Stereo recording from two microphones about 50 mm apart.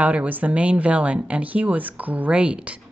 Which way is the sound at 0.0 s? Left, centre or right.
Right.